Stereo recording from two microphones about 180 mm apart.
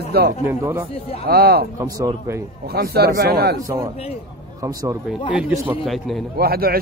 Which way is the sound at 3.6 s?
15° right (ahead or behind).